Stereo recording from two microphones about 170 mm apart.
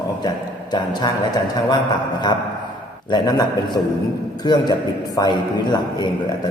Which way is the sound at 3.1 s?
25° left (ahead or behind).